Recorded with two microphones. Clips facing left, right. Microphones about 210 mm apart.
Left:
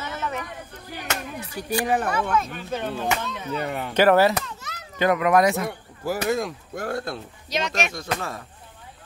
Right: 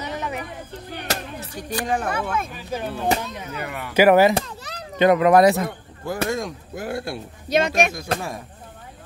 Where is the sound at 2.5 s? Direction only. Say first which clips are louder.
Even; 10° right (ahead or behind).